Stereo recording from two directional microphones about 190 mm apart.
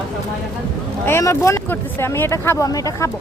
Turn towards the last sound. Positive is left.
turn(degrees=15)  # may be behind; listen again after turning